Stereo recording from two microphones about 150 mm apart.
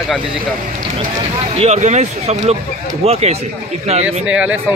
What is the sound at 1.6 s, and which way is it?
Speech, 50° right (ahead or behind).